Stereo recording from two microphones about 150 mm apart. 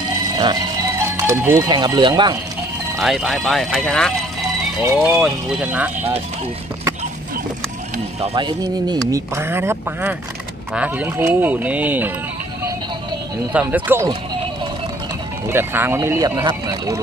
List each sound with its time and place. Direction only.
0.4 s music: 25° right (ahead or behind)
1.7 s speech: 30° right (ahead or behind)
3.0 s speech: centre (ahead or behind)
8.2 s speech: 30° right (ahead or behind); by 12.1 s 10° right (ahead or behind)
13.5 s speech: 10° right (ahead or behind)
15.4 s speech: 15° right (ahead or behind)